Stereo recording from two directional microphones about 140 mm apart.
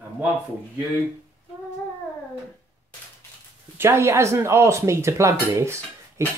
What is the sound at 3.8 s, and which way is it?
Speech, 20° right (ahead or behind).